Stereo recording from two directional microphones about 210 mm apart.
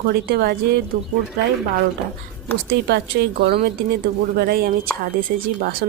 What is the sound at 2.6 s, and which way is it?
Speech, 50° right (ahead or behind).